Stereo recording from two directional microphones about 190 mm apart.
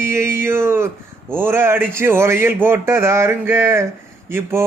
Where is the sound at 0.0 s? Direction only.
15° right (ahead or behind).